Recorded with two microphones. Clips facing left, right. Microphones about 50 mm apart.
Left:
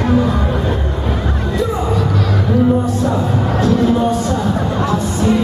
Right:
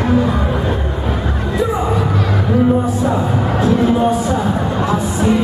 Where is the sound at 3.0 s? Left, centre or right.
Centre.